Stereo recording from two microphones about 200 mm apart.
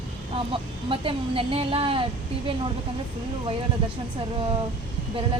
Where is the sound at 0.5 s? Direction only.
25° right (ahead or behind).